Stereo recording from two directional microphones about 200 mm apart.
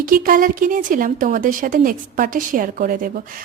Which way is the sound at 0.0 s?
45° right (ahead or behind).